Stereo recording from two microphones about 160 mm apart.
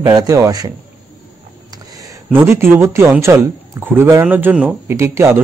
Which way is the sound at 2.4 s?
15° right (ahead or behind).